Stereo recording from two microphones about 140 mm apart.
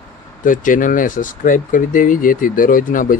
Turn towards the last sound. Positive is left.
turn(degrees=75)  # may be behind; listen again after turning